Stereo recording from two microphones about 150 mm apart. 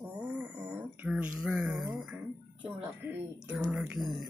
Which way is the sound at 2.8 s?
10° right (ahead or behind).